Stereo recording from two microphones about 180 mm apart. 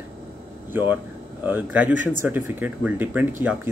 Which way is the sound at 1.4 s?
10° right (ahead or behind).